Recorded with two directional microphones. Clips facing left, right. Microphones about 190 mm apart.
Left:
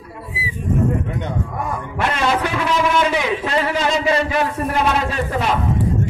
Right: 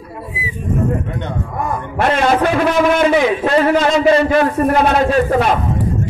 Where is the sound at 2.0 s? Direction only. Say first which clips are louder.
Right 6 dB; 50° right (ahead or behind).